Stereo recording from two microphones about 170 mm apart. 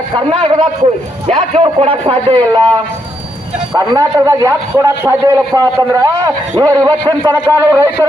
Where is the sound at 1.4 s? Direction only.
35° right (ahead or behind).